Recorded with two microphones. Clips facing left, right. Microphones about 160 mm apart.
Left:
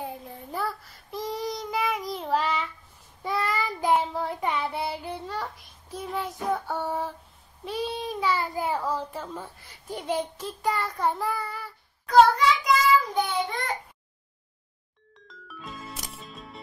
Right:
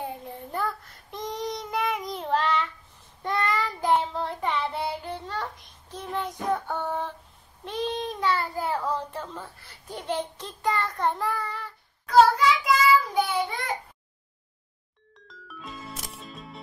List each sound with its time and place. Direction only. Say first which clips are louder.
0.0 s child singing: right 1 dB; centre (ahead or behind)
7.6 s a child's voice: right 1 dB; 10° left (ahead or behind)
12.1 s child singing: even; centre (ahead or behind)
15.2 s music: even; centre (ahead or behind)